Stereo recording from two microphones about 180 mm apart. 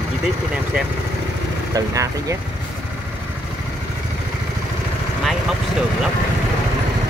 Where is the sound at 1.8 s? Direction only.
20° right (ahead or behind).